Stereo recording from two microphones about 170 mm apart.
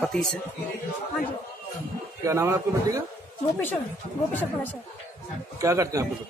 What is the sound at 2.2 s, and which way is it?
Speech, 15° right (ahead or behind).